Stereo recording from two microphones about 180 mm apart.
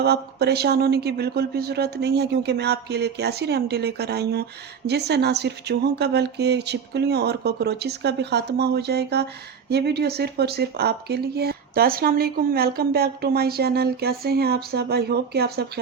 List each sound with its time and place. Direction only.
0.0 s speech: 65° right (ahead or behind)